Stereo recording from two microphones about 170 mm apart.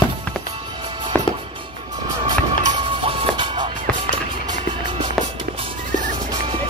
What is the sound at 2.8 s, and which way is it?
Music, 30° right (ahead or behind).